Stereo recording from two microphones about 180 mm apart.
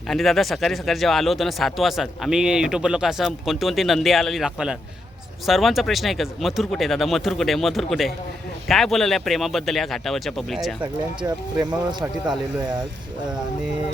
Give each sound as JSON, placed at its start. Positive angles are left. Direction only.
{"t": 0.1, "sound": "speech", "side_deg": 0}
{"t": 10.8, "sound": "speech", "side_deg": -25}